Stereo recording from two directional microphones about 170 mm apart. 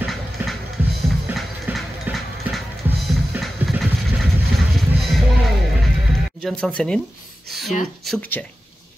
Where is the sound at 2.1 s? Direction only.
10° right (ahead or behind).